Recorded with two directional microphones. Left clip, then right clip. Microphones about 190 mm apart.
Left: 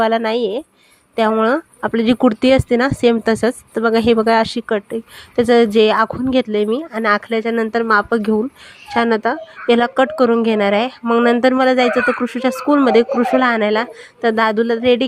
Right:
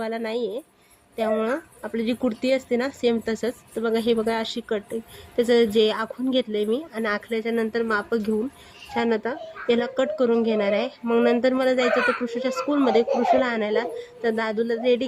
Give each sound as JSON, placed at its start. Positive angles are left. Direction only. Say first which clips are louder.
{"t": 0.0, "sound": "speech", "louder": "left 11 dB", "side_deg": 45}